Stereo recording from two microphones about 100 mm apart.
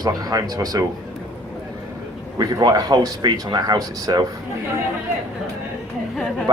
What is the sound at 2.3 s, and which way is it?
A man's voice, 40° right (ahead or behind).